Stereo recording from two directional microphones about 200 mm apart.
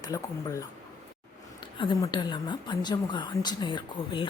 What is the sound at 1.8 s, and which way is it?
A woman's voice, 20° left (ahead or behind).